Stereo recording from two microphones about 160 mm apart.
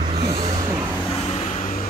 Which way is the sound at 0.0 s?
35° right (ahead or behind).